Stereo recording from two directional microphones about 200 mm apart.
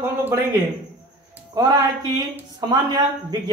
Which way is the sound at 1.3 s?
20° right (ahead or behind).